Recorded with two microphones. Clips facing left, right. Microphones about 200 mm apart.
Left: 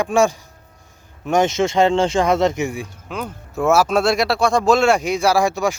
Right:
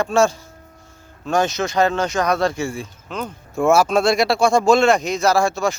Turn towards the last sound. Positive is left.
turn(degrees=15)  # may be behind; listen again after turning